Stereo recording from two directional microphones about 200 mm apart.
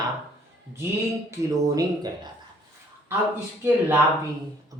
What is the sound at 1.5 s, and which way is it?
Speech, 15° right (ahead or behind).